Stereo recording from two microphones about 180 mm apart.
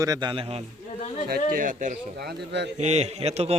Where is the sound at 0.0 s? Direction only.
20° right (ahead or behind).